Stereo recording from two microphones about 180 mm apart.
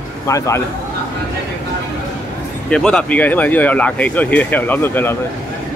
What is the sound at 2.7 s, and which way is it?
Speech, 5° left (ahead or behind).